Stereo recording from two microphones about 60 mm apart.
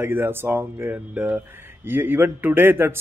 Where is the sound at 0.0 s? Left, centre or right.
Right.